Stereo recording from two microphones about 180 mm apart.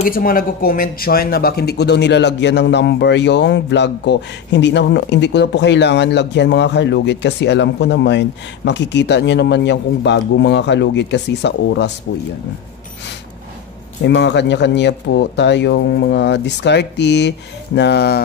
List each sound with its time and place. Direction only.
0.1 s speech: 55° left (ahead or behind); by 11.9 s 70° left (ahead or behind)
14.0 s speech: 75° left (ahead or behind)